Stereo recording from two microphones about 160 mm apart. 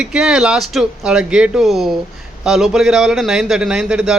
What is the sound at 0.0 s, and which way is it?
A man's voice, 5° right (ahead or behind).